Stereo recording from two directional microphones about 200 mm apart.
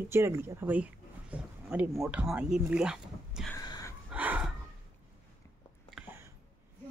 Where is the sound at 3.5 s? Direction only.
15° left (ahead or behind).